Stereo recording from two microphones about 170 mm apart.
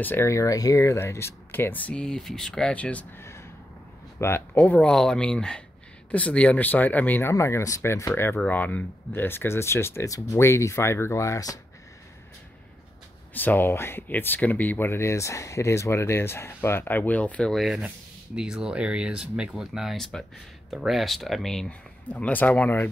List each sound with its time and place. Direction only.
0.0 s speech: 15° left (ahead or behind)
13.3 s speech: 10° left (ahead or behind)